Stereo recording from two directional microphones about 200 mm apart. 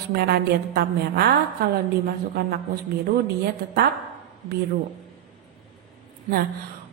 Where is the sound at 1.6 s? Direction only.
55° right (ahead or behind).